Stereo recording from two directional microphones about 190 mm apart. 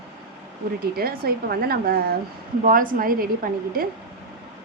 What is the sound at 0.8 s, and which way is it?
A woman's voice, 50° right (ahead or behind).